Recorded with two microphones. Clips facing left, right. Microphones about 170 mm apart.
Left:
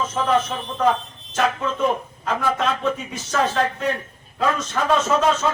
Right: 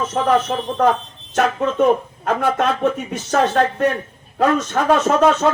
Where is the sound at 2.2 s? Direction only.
60° right (ahead or behind).